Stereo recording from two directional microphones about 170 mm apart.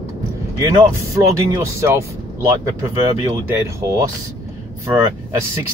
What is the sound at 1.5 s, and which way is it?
Speech, 15° right (ahead or behind).